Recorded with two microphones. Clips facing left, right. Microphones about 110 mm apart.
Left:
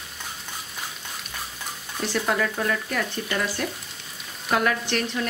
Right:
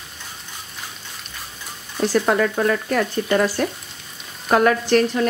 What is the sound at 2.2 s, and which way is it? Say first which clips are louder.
Speech: right 6 dB; 50° right (ahead or behind).